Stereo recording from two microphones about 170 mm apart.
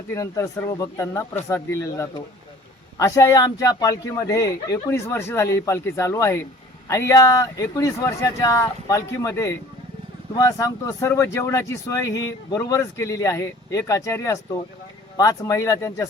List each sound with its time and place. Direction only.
0.1 s speech: 15° left (ahead or behind)